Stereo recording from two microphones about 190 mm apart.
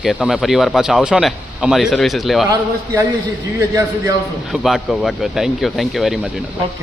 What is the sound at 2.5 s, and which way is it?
Speech, 15° right (ahead or behind).